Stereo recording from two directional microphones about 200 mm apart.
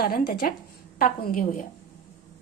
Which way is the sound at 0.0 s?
50° left (ahead or behind).